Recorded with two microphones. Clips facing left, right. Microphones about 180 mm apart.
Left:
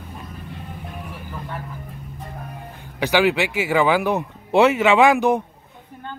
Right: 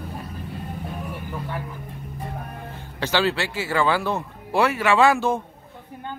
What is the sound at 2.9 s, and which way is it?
Speech, 15° left (ahead or behind).